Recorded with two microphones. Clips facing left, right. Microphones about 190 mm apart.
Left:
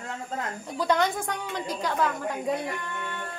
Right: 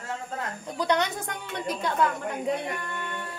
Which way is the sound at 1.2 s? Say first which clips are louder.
Left 1 dB; 25° right (ahead or behind).